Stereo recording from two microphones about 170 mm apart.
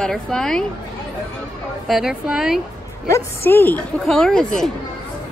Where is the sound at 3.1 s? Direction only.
15° left (ahead or behind).